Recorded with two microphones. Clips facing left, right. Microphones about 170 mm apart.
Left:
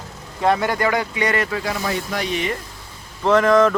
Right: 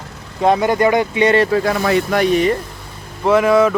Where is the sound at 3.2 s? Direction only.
10° right (ahead or behind).